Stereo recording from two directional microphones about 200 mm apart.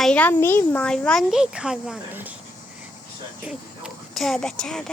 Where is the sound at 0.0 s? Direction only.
5° left (ahead or behind).